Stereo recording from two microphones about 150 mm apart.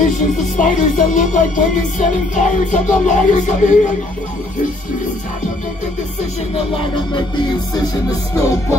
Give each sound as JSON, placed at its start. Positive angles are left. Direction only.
{"t": 0.0, "sound": "music", "side_deg": 55}